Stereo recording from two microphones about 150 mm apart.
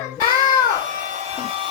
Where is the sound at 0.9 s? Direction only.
55° right (ahead or behind).